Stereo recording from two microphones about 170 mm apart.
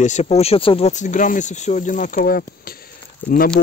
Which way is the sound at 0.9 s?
45° left (ahead or behind).